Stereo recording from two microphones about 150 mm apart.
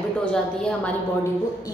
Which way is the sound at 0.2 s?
5° left (ahead or behind).